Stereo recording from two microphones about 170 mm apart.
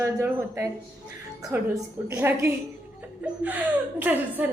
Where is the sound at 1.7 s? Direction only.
15° right (ahead or behind).